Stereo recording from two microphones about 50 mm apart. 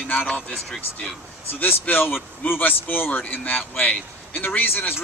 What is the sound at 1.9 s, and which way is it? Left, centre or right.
Speech, left.